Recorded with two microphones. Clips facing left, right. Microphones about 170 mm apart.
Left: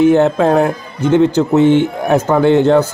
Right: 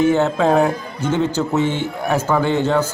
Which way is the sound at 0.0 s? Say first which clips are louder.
Left 6 dB; 10° left (ahead or behind).